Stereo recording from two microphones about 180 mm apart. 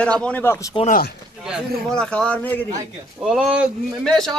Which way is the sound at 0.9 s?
55° left (ahead or behind).